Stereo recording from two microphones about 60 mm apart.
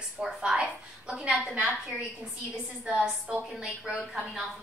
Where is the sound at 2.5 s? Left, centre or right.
Centre.